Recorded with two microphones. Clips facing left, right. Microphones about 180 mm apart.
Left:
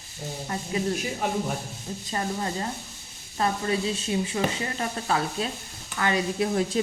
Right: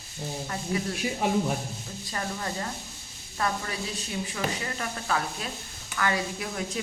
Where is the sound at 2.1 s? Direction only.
25° left (ahead or behind).